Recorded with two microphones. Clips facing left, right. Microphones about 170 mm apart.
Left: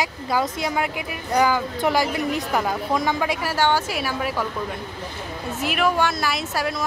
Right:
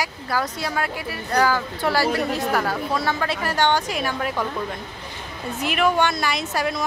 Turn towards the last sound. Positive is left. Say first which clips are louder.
# right 1 dB
turn(degrees=0)  # may be behind; listen again after turning